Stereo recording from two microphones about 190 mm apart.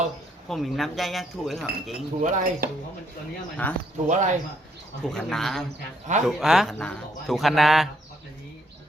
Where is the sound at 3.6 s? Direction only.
10° left (ahead or behind).